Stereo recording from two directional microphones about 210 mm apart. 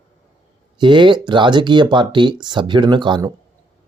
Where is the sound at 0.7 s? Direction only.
20° right (ahead or behind).